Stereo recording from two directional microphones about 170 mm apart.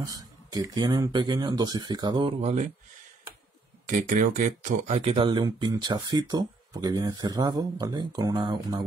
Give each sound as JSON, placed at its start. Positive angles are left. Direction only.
{"t": 0.0, "sound": "speech", "side_deg": -20}
{"t": 2.4, "sound": "speech", "side_deg": -40}
{"t": 3.8, "sound": "speech", "side_deg": -45}